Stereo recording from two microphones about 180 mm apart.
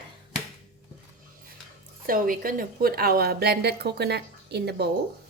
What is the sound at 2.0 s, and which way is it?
A woman's voice, 50° right (ahead or behind).